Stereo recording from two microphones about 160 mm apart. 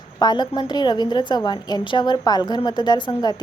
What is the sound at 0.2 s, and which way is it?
A woman's voice, 25° left (ahead or behind).